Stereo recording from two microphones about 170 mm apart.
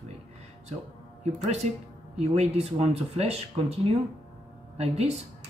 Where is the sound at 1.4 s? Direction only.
45° right (ahead or behind).